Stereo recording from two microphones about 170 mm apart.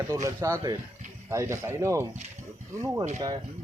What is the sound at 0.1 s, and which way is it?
Speech, 20° right (ahead or behind).